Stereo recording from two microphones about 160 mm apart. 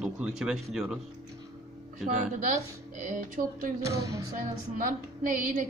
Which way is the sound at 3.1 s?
55° right (ahead or behind).